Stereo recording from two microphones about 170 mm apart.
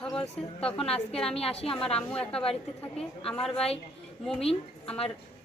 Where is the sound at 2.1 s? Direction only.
5° left (ahead or behind).